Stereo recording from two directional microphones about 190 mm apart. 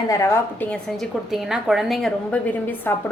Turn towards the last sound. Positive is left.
turn(degrees=15)  # may be behind; listen again after turning